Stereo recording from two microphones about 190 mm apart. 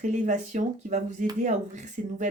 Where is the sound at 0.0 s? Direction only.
40° right (ahead or behind).